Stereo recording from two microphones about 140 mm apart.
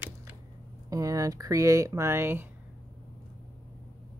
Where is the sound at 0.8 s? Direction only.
25° right (ahead or behind).